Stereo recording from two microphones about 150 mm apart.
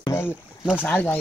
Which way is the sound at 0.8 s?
10° left (ahead or behind).